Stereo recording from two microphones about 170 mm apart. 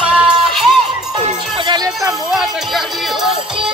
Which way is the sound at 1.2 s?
25° right (ahead or behind).